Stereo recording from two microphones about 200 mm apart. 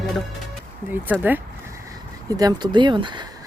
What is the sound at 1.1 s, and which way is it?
Speech, 10° right (ahead or behind).